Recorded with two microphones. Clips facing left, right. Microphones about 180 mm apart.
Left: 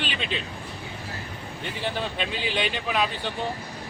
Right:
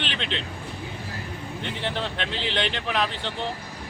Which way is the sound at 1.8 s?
10° left (ahead or behind).